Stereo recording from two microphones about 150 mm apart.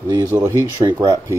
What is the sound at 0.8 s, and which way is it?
Speech, 25° right (ahead or behind).